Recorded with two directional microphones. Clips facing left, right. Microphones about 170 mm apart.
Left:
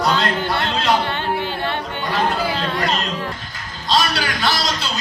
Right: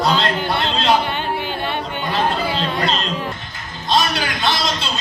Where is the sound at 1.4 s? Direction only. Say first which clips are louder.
Even; 20° right (ahead or behind).